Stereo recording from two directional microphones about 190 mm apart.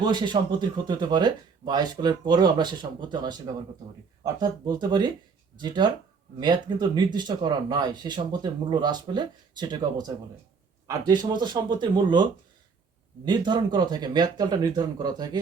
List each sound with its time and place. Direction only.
0.0 s speech: 20° right (ahead or behind)